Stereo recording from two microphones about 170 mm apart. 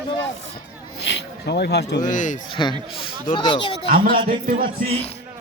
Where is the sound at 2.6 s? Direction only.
25° left (ahead or behind).